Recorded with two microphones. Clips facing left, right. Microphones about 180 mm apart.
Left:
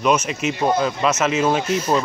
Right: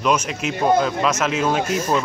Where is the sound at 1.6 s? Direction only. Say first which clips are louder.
Even; 45° right (ahead or behind).